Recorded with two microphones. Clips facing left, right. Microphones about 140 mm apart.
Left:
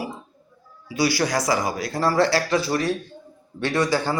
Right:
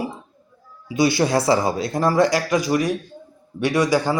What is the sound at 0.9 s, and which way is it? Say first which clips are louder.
A man's voice: right 4 dB; 20° right (ahead or behind).